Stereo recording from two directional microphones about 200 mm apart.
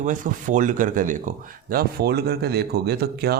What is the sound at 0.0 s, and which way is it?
Speech, 40° right (ahead or behind).